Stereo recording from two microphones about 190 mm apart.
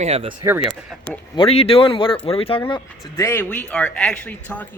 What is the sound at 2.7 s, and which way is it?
Speech, 15° left (ahead or behind).